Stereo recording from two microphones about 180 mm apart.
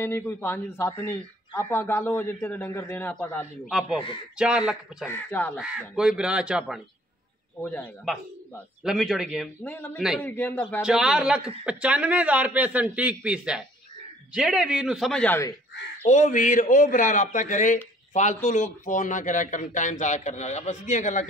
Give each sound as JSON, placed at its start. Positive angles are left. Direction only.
{"t": 0.0, "sound": "speech", "side_deg": 15}
{"t": 3.6, "sound": "speech", "side_deg": 0}
{"t": 5.0, "sound": "speech", "side_deg": 10}
{"t": 5.6, "sound": "speech", "side_deg": -5}
{"t": 7.6, "sound": "speech", "side_deg": 10}
{"t": 9.6, "sound": "speech", "side_deg": 10}
{"t": 10.8, "sound": "a man's voice", "side_deg": -5}
{"t": 16.0, "sound": "a man's voice", "side_deg": 40}